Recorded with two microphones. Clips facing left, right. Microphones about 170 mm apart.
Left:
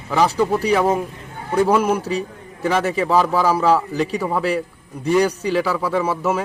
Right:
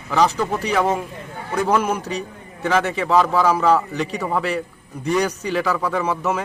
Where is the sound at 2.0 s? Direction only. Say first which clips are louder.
Left 4 dB; 30° left (ahead or behind).